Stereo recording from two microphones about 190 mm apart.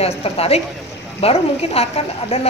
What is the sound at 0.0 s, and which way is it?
A woman's voice, 30° left (ahead or behind).